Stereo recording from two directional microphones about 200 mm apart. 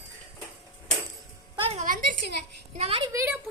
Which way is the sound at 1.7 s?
40° right (ahead or behind).